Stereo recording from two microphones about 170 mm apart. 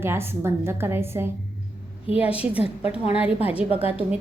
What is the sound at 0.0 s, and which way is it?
A woman's voice, 15° right (ahead or behind).